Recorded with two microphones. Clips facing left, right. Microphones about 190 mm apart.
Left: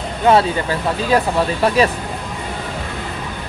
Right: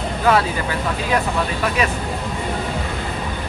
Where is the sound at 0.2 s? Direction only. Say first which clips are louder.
Left 4 dB; 25° left (ahead or behind).